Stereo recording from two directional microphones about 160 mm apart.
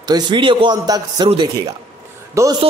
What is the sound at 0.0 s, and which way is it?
Speech, 25° right (ahead or behind).